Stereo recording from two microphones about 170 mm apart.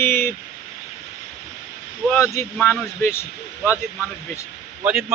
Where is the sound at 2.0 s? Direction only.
15° left (ahead or behind).